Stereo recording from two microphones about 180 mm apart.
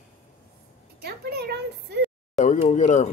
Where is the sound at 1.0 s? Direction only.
65° right (ahead or behind).